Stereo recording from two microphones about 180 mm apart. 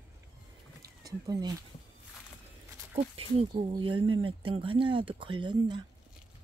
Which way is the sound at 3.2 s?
30° right (ahead or behind).